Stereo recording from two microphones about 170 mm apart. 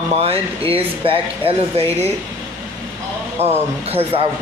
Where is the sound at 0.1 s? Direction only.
35° right (ahead or behind).